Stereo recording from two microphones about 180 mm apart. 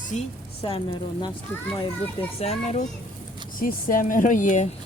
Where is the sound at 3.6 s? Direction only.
50° left (ahead or behind).